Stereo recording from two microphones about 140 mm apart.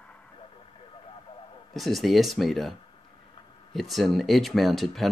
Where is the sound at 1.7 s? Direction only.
Centre (ahead or behind).